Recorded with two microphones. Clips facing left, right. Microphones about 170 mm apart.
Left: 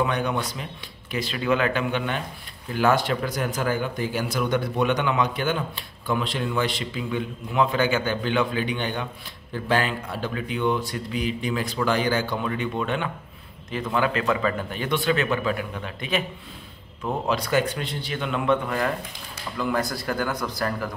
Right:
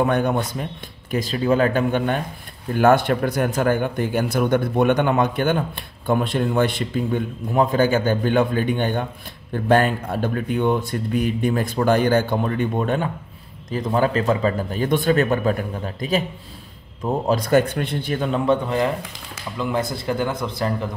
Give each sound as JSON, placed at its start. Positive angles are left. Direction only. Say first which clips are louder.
{"t": 0.0, "sound": "speech", "louder": "right 5 dB", "side_deg": -50}
{"t": 1.1, "sound": "speech", "louder": "right 5 dB", "side_deg": -40}
{"t": 17.3, "sound": "speech", "louder": "right 6 dB", "side_deg": -50}